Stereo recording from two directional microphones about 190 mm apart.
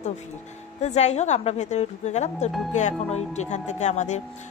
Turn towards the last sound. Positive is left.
turn(degrees=40)  # may be behind; listen again after turning